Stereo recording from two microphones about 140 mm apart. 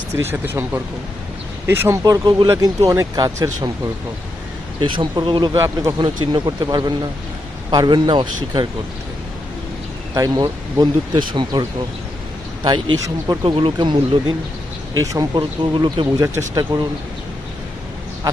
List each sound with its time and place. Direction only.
0.2 s speech: 15° right (ahead or behind)
4.9 s speech: 35° right (ahead or behind)
5.5 s speech: 20° right (ahead or behind)
6.0 s speech: 35° right (ahead or behind)
10.2 s speech: 25° right (ahead or behind)
13.4 s speech: 40° right (ahead or behind)
15.0 s speech: 25° right (ahead or behind)
15.4 s speech: 35° right (ahead or behind)